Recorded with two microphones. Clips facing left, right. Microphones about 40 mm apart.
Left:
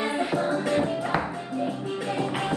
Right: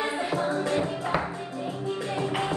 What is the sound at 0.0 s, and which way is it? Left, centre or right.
Music, left.